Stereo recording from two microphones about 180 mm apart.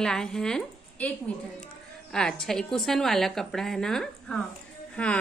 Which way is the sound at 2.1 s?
5° left (ahead or behind).